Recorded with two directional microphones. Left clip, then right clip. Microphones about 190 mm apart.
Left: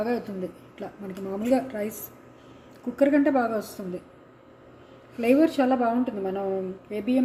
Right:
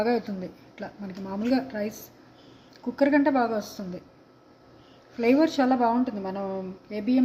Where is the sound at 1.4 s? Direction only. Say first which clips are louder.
Left 2 dB; 45° right (ahead or behind).